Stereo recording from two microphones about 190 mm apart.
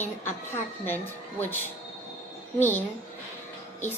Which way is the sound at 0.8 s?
10° left (ahead or behind).